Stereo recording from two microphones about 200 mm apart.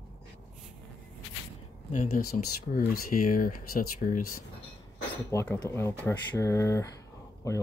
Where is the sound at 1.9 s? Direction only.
40° left (ahead or behind).